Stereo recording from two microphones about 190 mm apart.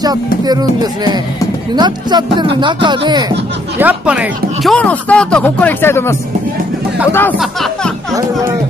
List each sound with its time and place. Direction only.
0.0 s speech: 20° right (ahead or behind)
3.8 s speech: 5° right (ahead or behind)
4.7 s speech: 5° left (ahead or behind)
8.1 s speech: 15° right (ahead or behind)